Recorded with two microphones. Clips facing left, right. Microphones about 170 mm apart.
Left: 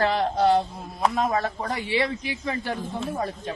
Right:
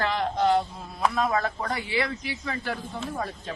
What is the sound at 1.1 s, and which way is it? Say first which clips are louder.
Speech: left 1 dB; 20° left (ahead or behind).